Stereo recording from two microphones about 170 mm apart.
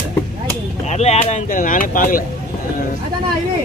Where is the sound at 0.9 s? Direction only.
40° left (ahead or behind).